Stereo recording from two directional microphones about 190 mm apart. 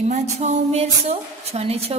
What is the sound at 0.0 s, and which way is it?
A woman's voice, 35° right (ahead or behind).